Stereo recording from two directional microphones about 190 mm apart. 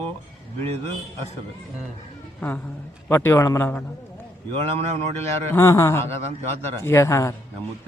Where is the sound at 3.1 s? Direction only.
15° left (ahead or behind).